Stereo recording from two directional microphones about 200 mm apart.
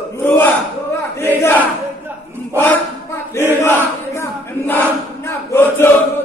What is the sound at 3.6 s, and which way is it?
Battle cry, 10° left (ahead or behind).